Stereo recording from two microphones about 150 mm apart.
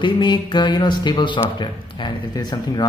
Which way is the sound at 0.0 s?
30° left (ahead or behind).